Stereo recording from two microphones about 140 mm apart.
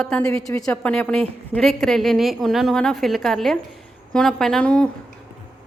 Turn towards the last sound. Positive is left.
turn(degrees=5)  # may be behind; listen again after turning